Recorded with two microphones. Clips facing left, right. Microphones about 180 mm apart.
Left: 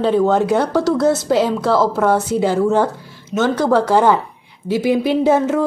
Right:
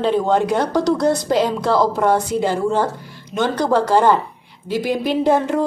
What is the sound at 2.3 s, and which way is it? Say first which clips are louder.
Speech: left 3 dB; 5° left (ahead or behind).